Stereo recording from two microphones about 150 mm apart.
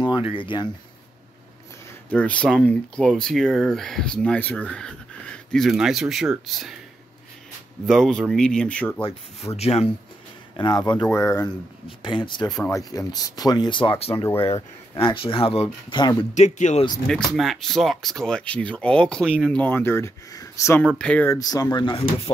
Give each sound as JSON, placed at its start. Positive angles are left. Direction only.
{"t": 0.3, "sound": "speech", "side_deg": 35}
{"t": 2.0, "sound": "speech", "side_deg": 10}
{"t": 7.8, "sound": "speech", "side_deg": 5}
{"t": 9.6, "sound": "speech", "side_deg": 45}
{"t": 10.5, "sound": "speech", "side_deg": 30}
{"t": 12.0, "sound": "speech", "side_deg": 35}
{"t": 14.1, "sound": "speech", "side_deg": 15}
{"t": 14.5, "sound": "speech", "side_deg": 35}
{"t": 16.3, "sound": "speech", "side_deg": 50}
{"t": 17.1, "sound": "speech", "side_deg": 0}
{"t": 21.4, "sound": "speech", "side_deg": 25}